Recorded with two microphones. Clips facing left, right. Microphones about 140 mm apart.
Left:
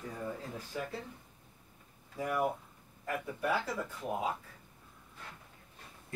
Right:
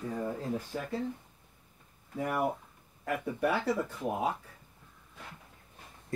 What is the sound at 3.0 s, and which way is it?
Speech, 65° right (ahead or behind).